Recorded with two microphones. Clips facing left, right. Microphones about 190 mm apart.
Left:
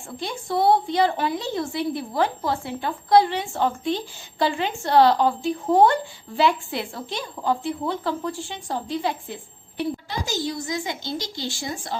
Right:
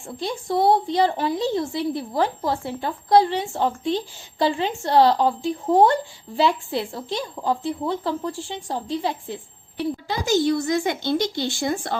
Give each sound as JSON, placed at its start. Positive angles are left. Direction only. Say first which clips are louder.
{"t": 0.2, "sound": "a woman's voice", "louder": "right 2 dB", "side_deg": -35}
{"t": 10.1, "sound": "a woman's voice", "louder": "right 8 dB", "side_deg": -60}